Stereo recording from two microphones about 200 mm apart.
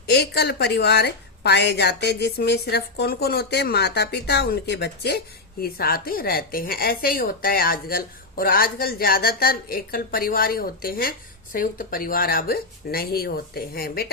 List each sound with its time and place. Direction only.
0.1 s a woman's voice: 55° left (ahead or behind)